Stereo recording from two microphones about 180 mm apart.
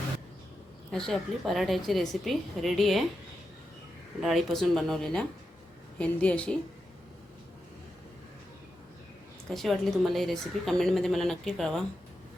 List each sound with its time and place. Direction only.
0.9 s a woman's voice: centre (ahead or behind)
4.2 s a woman's voice: centre (ahead or behind)
9.5 s a woman's voice: centre (ahead or behind)